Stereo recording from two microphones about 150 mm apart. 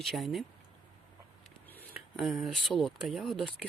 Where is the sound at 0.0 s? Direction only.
Centre (ahead or behind).